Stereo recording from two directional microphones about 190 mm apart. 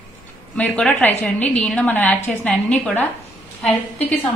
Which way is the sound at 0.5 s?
5° left (ahead or behind).